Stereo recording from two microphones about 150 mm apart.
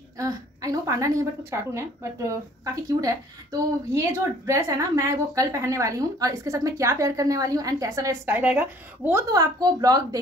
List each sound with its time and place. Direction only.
0.2 s a woman's voice: 20° right (ahead or behind)
9.3 s a woman's voice: 25° right (ahead or behind)